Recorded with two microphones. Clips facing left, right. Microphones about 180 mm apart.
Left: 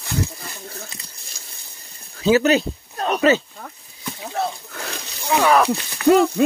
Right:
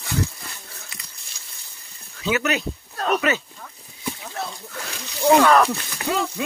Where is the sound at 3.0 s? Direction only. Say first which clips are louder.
Left 1 dB; 20° left (ahead or behind).